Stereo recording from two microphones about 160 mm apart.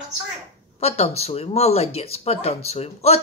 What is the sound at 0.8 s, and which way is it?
Speech, 40° left (ahead or behind).